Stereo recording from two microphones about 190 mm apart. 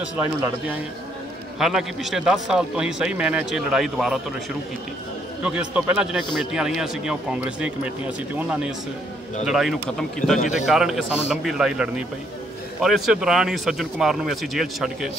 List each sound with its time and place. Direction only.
0.1 s a man's voice: 10° right (ahead or behind)
5.4 s a man's voice: 5° right (ahead or behind)